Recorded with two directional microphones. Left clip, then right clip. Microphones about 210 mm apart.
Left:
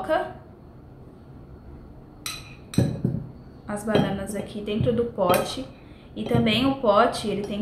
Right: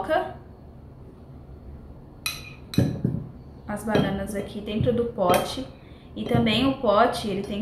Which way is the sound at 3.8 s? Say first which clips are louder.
Left 1 dB; 15° left (ahead or behind).